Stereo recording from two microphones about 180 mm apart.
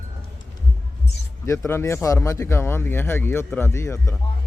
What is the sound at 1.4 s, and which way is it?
Speech, 15° left (ahead or behind).